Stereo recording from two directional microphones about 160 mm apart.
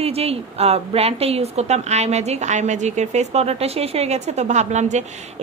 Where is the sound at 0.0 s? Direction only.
40° right (ahead or behind).